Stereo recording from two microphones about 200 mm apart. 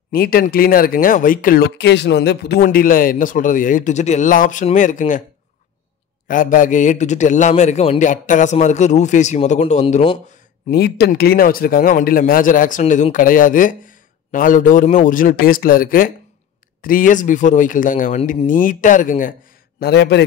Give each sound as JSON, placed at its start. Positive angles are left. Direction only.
{"t": 0.1, "sound": "a man's voice", "side_deg": 50}
{"t": 6.2, "sound": "a man's voice", "side_deg": 40}
{"t": 10.7, "sound": "a man's voice", "side_deg": 50}
{"t": 19.8, "sound": "a man's voice", "side_deg": 55}